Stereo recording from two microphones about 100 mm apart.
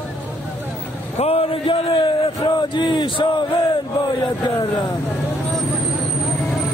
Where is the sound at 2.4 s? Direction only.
50° left (ahead or behind).